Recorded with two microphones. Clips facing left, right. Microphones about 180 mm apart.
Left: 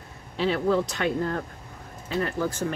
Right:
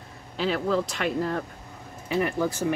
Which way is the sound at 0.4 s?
Centre (ahead or behind).